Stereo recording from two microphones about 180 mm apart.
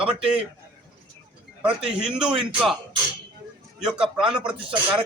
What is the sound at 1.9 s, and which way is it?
Speech, 5° right (ahead or behind).